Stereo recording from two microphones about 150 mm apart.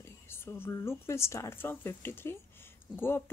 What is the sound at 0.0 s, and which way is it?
A woman's voice, 15° left (ahead or behind).